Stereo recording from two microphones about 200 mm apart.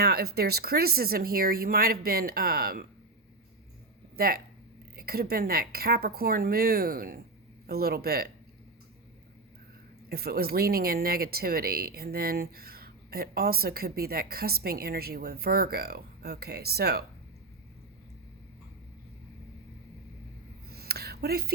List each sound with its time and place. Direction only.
0.0 s speech: 50° right (ahead or behind)
4.2 s speech: 50° right (ahead or behind)
10.1 s speech: 50° right (ahead or behind)
20.7 s a sound: 50° right (ahead or behind)